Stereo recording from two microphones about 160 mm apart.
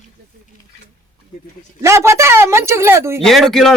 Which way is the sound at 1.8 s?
15° right (ahead or behind).